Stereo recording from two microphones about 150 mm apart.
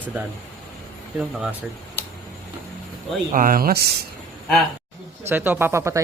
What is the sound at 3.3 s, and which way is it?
Speech, 70° right (ahead or behind).